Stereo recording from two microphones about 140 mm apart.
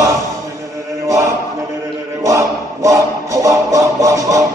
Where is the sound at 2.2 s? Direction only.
20° right (ahead or behind).